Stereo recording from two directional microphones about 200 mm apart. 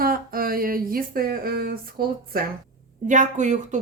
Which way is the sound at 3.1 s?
35° right (ahead or behind).